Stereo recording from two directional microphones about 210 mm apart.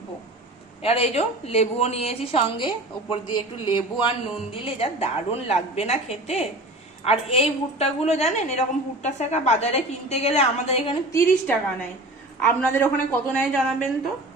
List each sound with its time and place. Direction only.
0.8 s a woman's voice: 30° left (ahead or behind)
11.1 s a woman's voice: 10° left (ahead or behind)